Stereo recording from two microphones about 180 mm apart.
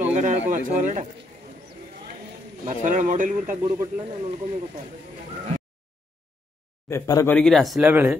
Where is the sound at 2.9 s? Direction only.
45° right (ahead or behind).